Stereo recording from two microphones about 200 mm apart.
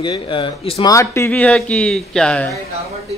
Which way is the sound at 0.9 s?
15° left (ahead or behind).